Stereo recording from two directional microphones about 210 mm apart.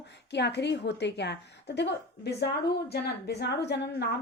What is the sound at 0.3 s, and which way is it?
A woman's voice, 55° left (ahead or behind).